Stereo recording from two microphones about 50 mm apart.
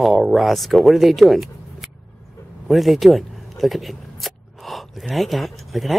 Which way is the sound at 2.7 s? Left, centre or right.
Centre.